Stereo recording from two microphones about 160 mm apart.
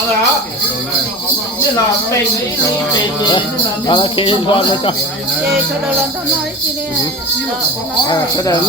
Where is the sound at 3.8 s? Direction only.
30° left (ahead or behind).